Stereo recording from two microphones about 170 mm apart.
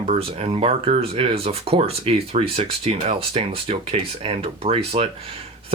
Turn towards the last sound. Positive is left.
turn(degrees=-35)  # may be behind; listen again after turning